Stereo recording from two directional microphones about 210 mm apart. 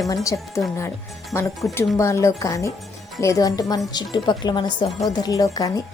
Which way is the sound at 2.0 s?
15° left (ahead or behind).